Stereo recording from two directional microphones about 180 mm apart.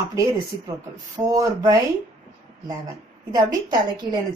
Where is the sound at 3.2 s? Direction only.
20° right (ahead or behind).